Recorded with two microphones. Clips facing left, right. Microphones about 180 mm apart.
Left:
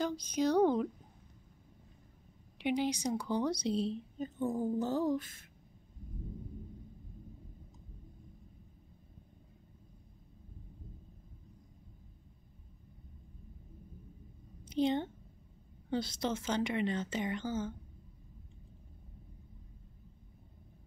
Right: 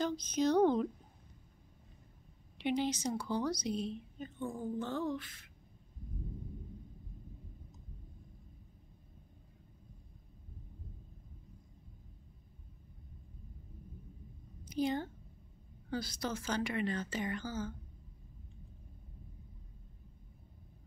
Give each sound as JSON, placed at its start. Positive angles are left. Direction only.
{"t": 0.0, "sound": "speech", "side_deg": 10}
{"t": 2.6, "sound": "a woman's voice", "side_deg": 15}
{"t": 14.6, "sound": "a sound", "side_deg": 25}
{"t": 15.9, "sound": "a woman's voice", "side_deg": 25}